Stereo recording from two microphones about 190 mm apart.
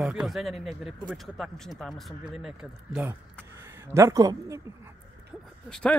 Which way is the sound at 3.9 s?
15° right (ahead or behind).